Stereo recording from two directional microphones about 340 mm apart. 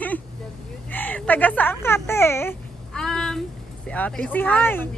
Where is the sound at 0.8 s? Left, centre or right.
Centre.